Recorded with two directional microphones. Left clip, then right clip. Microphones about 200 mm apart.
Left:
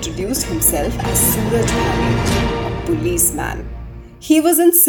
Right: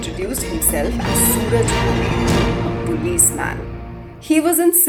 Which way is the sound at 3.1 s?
50° left (ahead or behind).